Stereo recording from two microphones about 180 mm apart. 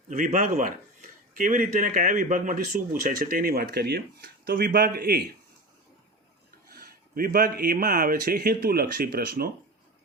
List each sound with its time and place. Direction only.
0.1 s speech: 45° right (ahead or behind)
6.7 s speech: 55° right (ahead or behind)